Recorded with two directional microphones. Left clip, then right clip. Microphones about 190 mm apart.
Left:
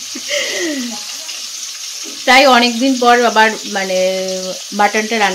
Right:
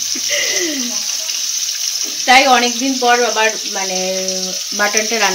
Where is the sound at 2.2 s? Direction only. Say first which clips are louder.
Left 2 dB; 45° left (ahead or behind).